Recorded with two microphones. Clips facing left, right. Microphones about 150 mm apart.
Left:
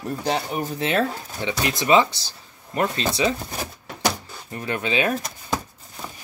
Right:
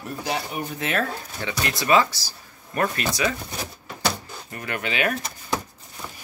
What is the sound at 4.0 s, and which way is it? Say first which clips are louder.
Vehicle: left 2 dB; 20° left (ahead or behind).